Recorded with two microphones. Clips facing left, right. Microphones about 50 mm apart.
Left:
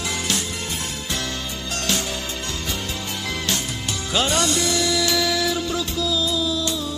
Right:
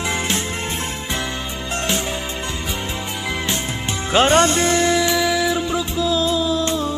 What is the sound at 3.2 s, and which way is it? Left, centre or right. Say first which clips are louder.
Music: right 2 dB; right.